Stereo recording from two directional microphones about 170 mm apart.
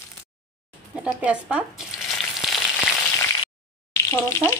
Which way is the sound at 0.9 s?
10° right (ahead or behind).